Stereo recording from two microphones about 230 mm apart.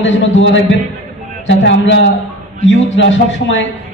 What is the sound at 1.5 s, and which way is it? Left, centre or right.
A man's voice, left.